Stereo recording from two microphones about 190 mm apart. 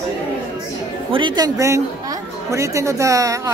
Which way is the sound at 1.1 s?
25° right (ahead or behind).